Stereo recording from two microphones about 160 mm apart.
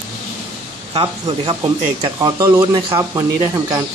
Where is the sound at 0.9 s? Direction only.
30° right (ahead or behind).